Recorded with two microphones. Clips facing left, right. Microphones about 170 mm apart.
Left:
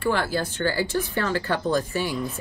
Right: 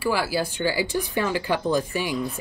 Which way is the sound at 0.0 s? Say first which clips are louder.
Even; 5° right (ahead or behind).